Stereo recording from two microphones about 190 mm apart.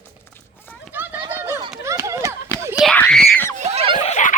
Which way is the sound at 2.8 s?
5° left (ahead or behind).